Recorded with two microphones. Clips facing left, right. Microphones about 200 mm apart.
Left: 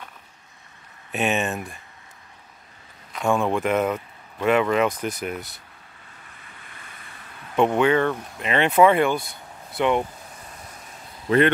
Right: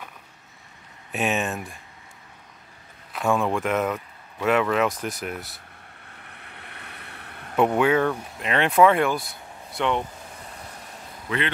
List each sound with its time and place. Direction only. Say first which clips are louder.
1.1 s speech: left 2 dB; centre (ahead or behind)
3.1 s speech: left 1 dB; centre (ahead or behind)
6.1 s boat: right 3 dB; 65° right (ahead or behind)
7.5 s speech: left 1 dB; 5° right (ahead or behind)
11.2 s speech: left 10 dB; 45° left (ahead or behind)